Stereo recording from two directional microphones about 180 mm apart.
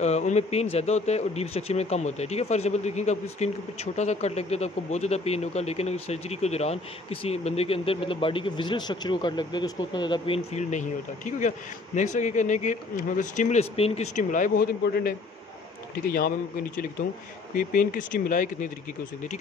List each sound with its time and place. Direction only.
0.0 s speech: 40° left (ahead or behind)